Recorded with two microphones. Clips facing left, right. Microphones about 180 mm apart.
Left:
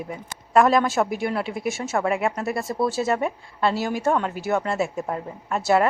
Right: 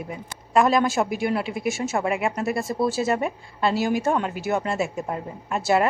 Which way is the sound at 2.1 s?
15° right (ahead or behind).